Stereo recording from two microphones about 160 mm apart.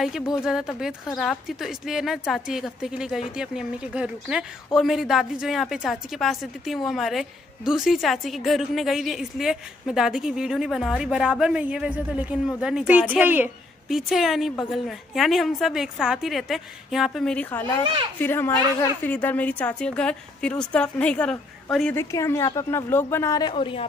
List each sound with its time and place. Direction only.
0.4 s a woman's voice: 5° right (ahead or behind)
21.9 s a woman's voice: 15° left (ahead or behind)
23.5 s speech: 35° left (ahead or behind)